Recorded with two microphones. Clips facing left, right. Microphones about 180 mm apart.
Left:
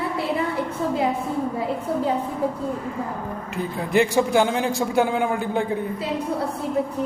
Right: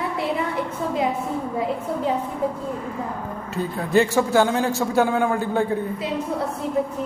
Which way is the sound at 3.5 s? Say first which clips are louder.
Right 1 dB; 15° left (ahead or behind).